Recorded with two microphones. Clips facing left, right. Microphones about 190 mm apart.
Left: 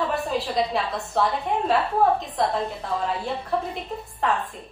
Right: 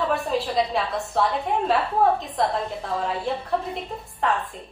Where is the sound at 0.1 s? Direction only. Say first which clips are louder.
Right 1 dB; centre (ahead or behind).